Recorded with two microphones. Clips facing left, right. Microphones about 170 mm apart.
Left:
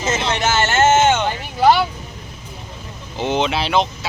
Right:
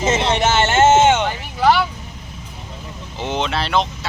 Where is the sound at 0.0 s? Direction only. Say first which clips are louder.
Right 3 dB; 25° right (ahead or behind).